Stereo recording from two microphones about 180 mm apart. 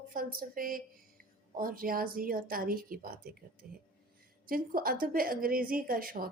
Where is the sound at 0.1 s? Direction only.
50° right (ahead or behind).